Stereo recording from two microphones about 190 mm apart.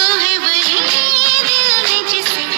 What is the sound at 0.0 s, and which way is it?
Music, 55° right (ahead or behind).